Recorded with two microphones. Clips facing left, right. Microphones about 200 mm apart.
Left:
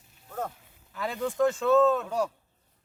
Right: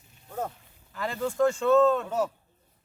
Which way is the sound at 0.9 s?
Centre (ahead or behind).